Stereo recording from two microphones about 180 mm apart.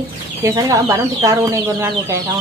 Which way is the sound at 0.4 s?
20° right (ahead or behind).